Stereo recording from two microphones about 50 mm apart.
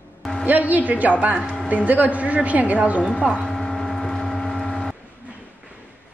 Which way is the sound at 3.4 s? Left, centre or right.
Centre.